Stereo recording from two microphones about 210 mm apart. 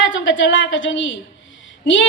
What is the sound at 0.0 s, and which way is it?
A woman's voice, 65° left (ahead or behind).